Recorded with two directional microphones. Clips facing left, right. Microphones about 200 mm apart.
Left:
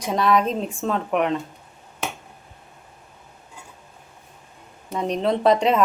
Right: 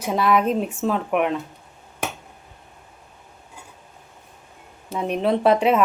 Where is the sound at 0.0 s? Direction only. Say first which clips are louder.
Even; 5° right (ahead or behind).